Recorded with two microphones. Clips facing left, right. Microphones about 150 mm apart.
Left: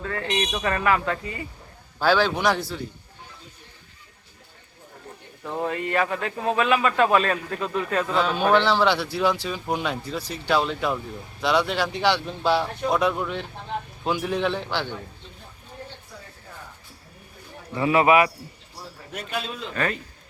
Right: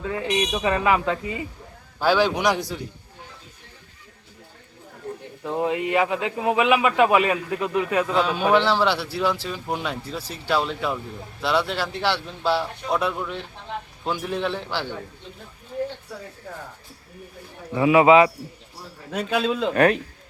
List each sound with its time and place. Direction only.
0.0 s a man's voice: 15° right (ahead or behind)
5.4 s a man's voice: 15° right (ahead or behind)
17.7 s speech: 15° right (ahead or behind)
19.7 s speech: 65° right (ahead or behind)